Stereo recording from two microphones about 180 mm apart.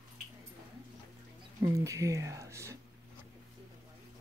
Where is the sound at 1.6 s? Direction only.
15° right (ahead or behind).